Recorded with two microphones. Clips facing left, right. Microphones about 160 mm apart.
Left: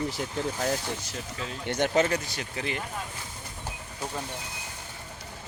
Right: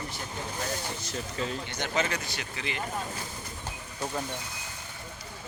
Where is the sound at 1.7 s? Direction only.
55° left (ahead or behind).